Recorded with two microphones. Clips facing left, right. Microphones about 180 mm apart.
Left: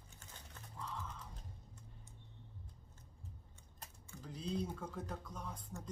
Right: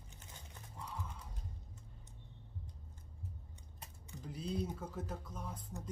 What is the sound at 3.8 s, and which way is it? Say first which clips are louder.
Speech: right 2 dB; 10° right (ahead or behind).